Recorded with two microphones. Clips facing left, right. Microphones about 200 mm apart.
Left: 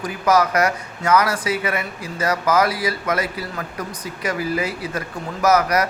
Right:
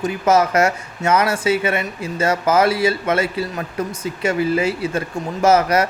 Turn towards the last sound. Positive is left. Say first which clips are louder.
# right 3 dB
turn(degrees=-25)  # may be behind; listen again after turning